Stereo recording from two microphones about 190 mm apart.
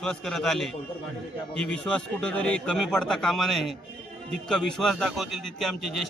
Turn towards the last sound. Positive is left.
turn(degrees=0)  # may be behind; listen again after turning